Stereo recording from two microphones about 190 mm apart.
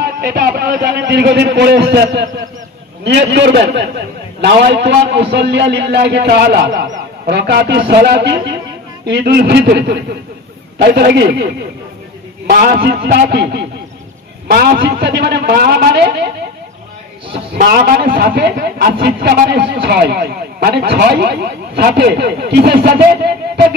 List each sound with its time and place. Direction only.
0.0 s a man's voice: 55° right (ahead or behind)
17.6 s a man's voice: 50° right (ahead or behind)